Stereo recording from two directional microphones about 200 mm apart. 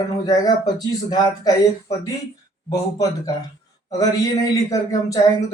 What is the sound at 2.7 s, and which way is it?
A man's voice, 15° left (ahead or behind).